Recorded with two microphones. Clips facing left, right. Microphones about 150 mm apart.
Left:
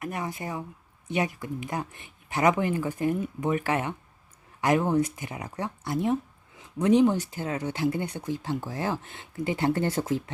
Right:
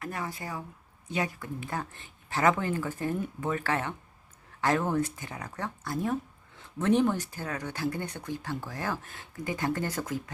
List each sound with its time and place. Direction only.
0.0 s speech: 20° left (ahead or behind)